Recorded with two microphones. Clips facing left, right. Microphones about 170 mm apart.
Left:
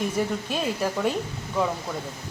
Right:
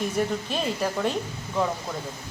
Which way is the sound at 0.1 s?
5° left (ahead or behind).